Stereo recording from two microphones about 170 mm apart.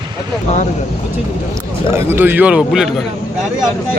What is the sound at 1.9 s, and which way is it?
Speech, 15° right (ahead or behind).